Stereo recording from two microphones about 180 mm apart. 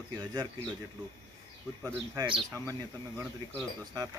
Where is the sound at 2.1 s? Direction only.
25° right (ahead or behind).